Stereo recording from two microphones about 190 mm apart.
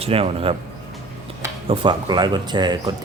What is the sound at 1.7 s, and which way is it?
Speech, 25° right (ahead or behind).